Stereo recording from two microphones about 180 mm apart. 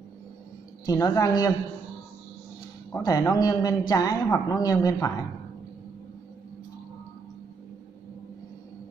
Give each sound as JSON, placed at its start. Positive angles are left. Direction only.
{"t": 0.8, "sound": "a man's voice", "side_deg": 20}
{"t": 2.9, "sound": "a man's voice", "side_deg": 20}